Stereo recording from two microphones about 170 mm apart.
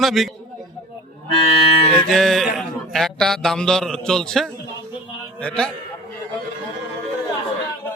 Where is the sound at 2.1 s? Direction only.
Centre (ahead or behind).